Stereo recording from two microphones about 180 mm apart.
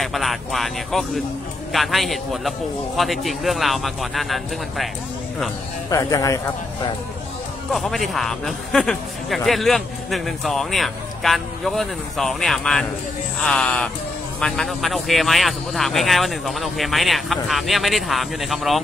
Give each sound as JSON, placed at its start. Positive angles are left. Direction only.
{"t": 0.0, "sound": "a man's voice", "side_deg": 0}
{"t": 5.9, "sound": "speech", "side_deg": 15}
{"t": 7.7, "sound": "a man's voice", "side_deg": 0}